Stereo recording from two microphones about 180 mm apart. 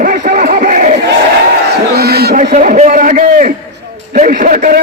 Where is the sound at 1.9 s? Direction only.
60° right (ahead or behind).